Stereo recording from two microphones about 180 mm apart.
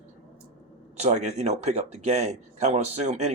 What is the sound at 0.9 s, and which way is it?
Speech, 40° right (ahead or behind).